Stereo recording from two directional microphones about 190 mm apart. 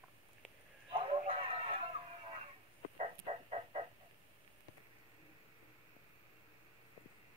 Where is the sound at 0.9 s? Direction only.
30° right (ahead or behind).